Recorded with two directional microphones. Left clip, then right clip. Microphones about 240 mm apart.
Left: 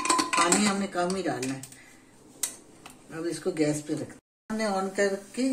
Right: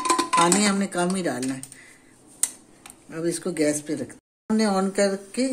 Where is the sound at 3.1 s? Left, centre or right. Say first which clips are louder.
Right 3 dB; right.